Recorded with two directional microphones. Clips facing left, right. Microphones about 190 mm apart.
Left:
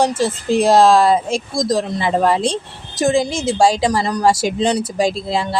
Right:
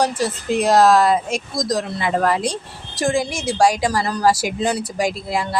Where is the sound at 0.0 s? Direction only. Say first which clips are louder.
Left 3 dB; 25° left (ahead or behind).